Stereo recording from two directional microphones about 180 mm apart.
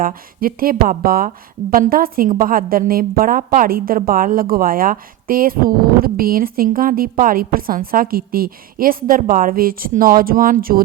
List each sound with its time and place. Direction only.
0.0 s a woman's voice: 55° right (ahead or behind)